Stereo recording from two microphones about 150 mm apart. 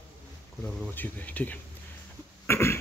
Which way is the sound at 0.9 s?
10° left (ahead or behind).